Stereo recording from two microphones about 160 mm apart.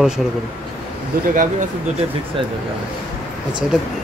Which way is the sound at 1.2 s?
60° right (ahead or behind).